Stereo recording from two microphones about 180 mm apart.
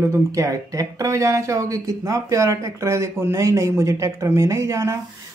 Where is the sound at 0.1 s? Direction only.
20° right (ahead or behind).